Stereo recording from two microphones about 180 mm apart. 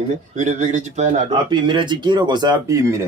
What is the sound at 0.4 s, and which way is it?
Speech, 45° right (ahead or behind).